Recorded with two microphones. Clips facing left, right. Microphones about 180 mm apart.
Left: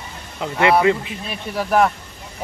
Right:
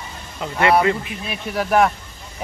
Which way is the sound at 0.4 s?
20° left (ahead or behind).